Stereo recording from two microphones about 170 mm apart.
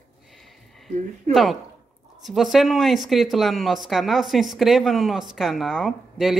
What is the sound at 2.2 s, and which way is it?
Speech, centre (ahead or behind).